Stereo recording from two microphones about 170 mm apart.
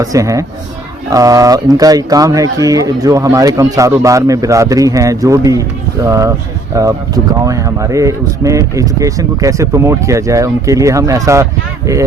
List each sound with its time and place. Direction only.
0.0 s speech: 20° right (ahead or behind)